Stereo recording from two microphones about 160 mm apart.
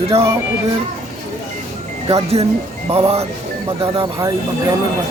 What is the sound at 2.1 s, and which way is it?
Speech, 40° right (ahead or behind).